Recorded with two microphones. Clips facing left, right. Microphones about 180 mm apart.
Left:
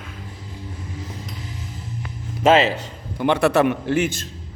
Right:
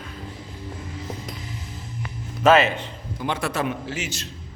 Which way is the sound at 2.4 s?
25° left (ahead or behind).